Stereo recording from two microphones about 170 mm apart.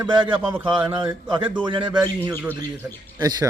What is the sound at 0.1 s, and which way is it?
Speech, 30° right (ahead or behind).